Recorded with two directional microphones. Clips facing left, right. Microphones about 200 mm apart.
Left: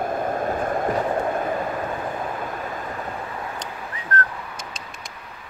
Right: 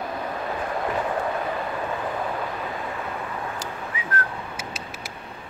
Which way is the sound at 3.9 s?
5° right (ahead or behind).